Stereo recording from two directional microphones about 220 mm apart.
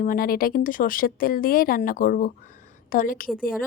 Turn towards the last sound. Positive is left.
turn(degrees=40)  # may be behind; listen again after turning